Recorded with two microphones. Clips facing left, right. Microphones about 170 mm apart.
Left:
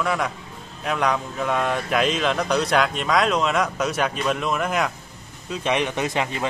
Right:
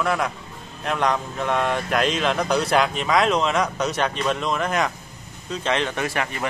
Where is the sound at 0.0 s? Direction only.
Centre (ahead or behind).